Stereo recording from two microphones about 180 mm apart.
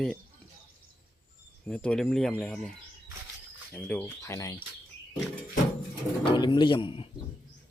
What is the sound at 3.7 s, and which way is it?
Speech, 5° left (ahead or behind).